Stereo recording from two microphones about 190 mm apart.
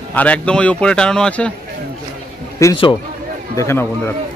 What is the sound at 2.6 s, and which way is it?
Speech, 25° left (ahead or behind).